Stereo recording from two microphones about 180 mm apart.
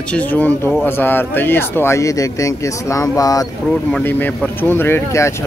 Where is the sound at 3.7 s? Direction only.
5° left (ahead or behind).